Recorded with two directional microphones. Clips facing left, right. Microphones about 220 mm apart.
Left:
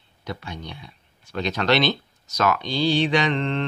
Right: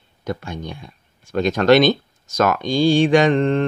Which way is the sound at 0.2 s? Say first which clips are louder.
Right 6 dB; 50° right (ahead or behind).